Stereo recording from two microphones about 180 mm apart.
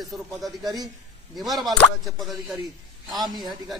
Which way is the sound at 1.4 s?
Centre (ahead or behind).